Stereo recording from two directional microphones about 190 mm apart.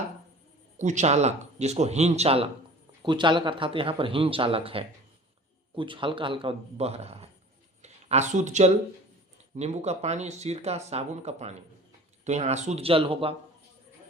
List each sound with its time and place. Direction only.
0.8 s speech: 40° right (ahead or behind)
7.8 s a sound: 35° right (ahead or behind)
9.6 s speech: 35° right (ahead or behind)